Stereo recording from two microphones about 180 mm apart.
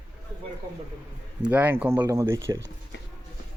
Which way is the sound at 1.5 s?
10° right (ahead or behind).